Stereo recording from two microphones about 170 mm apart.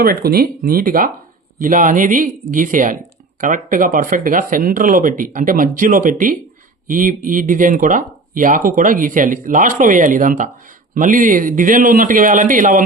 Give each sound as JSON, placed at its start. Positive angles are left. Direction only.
{"t": 0.0, "sound": "speech", "side_deg": -65}